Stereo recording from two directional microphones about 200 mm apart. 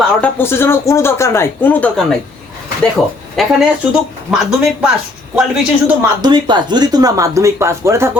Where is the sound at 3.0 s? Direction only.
5° left (ahead or behind).